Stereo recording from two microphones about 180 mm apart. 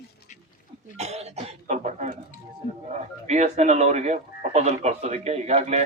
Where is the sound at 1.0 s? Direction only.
35° right (ahead or behind).